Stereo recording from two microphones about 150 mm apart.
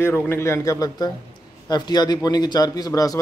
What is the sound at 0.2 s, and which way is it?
A man's voice, 15° left (ahead or behind).